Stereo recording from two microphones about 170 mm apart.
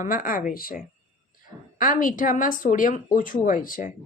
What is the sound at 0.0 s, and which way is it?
Speech, 55° left (ahead or behind).